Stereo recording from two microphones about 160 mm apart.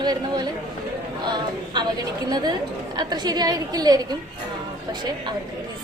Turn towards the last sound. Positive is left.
turn(degrees=-25)  # may be behind; listen again after turning